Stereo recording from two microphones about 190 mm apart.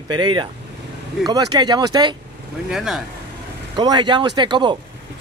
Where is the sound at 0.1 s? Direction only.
25° right (ahead or behind).